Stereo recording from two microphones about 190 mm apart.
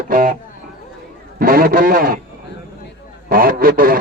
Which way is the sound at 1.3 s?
50° right (ahead or behind).